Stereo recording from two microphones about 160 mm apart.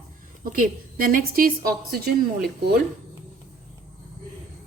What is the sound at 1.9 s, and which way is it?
Speech, 75° right (ahead or behind).